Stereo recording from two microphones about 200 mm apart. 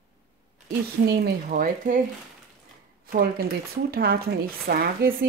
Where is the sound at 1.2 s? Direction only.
45° right (ahead or behind).